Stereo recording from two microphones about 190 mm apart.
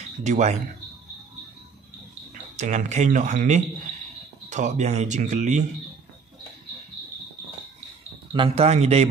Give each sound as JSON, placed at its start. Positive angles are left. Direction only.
{"t": 0.2, "sound": "speech", "side_deg": -40}
{"t": 2.3, "sound": "speech", "side_deg": -40}
{"t": 8.3, "sound": "speech", "side_deg": -30}